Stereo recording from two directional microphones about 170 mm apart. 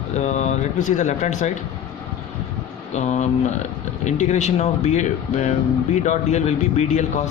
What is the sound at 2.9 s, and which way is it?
Speech, 45° left (ahead or behind).